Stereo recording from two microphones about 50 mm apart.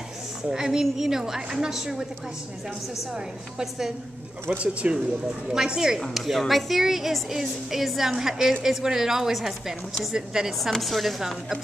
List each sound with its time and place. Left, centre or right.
0.5 s a woman's voice: centre
3.5 s a woman's voice: centre
4.5 s speech: right
5.5 s a woman's voice: centre
5.9 s a woman's voice: centre
10.8 s a woman's voice: centre